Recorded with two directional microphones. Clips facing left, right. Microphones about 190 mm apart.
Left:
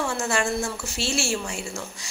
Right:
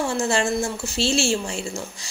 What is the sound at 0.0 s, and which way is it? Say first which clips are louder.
Speech: right 3 dB; 25° right (ahead or behind).